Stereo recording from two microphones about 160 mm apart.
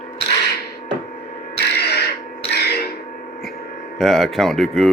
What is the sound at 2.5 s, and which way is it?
Music, 90° left.